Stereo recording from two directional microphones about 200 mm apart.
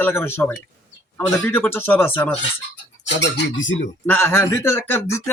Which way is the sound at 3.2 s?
65° left (ahead or behind).